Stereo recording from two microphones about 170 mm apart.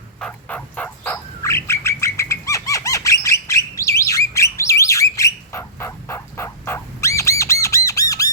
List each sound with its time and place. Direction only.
0.2 s bird: 10° left (ahead or behind)